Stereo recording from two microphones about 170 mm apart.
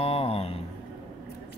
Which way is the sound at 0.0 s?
35° left (ahead or behind).